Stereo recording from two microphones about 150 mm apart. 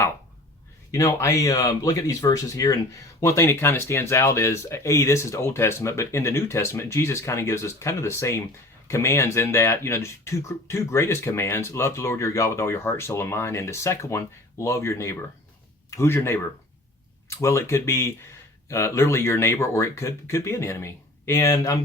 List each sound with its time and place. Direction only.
0.9 s speech: 20° left (ahead or behind)